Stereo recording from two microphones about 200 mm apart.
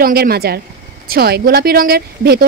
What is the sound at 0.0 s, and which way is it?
A woman's voice, 50° right (ahead or behind).